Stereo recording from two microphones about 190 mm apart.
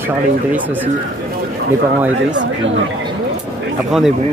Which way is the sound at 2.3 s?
70° right (ahead or behind).